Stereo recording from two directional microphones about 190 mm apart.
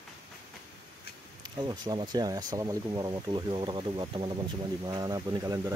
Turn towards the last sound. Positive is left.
turn(degrees=-20)  # may be behind; listen again after turning